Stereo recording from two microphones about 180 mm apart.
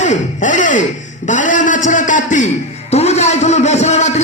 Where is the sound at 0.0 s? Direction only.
40° left (ahead or behind).